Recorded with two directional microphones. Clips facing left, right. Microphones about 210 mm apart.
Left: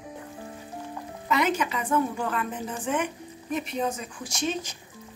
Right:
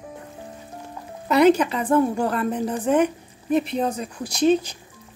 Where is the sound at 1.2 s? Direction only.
35° right (ahead or behind).